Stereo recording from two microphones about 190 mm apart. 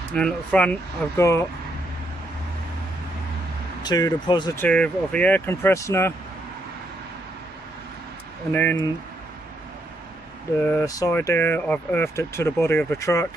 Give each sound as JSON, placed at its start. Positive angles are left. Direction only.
{"t": 0.1, "sound": "speech", "side_deg": 5}
{"t": 3.8, "sound": "speech", "side_deg": 20}
{"t": 4.6, "sound": "speech", "side_deg": 5}
{"t": 8.5, "sound": "speech", "side_deg": 10}
{"t": 10.6, "sound": "speech", "side_deg": 15}